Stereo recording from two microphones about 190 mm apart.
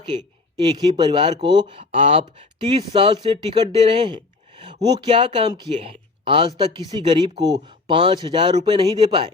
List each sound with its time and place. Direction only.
0.1 s speech: 25° right (ahead or behind)